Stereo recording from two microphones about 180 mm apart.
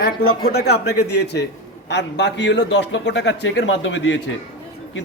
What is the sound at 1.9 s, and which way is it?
A man's voice, 80° left.